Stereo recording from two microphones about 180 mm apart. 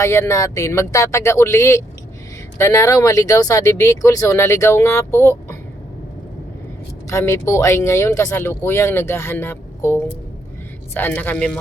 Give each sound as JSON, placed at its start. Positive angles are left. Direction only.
{"t": 0.0, "sound": "speech", "side_deg": 15}
{"t": 7.1, "sound": "speech", "side_deg": 15}